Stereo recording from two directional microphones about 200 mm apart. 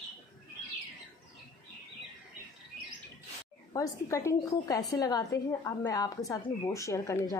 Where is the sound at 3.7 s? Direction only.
15° left (ahead or behind).